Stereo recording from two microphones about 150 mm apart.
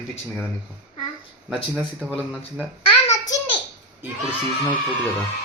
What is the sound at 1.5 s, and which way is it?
Speech, 10° right (ahead or behind).